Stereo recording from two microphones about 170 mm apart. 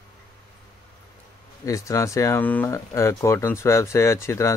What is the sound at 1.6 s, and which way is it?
Speech, 20° left (ahead or behind).